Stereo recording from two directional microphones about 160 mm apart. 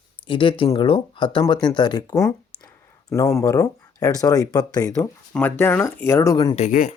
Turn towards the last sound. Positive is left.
turn(degrees=50)  # may be behind; listen again after turning